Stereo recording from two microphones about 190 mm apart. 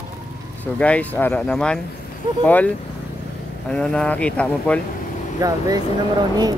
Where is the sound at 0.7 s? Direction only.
5° left (ahead or behind).